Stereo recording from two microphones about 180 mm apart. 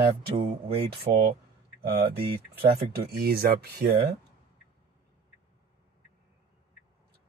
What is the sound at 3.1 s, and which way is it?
Speech, 60° right (ahead or behind).